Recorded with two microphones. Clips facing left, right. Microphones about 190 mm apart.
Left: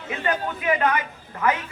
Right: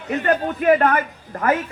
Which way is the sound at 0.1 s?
50° right (ahead or behind).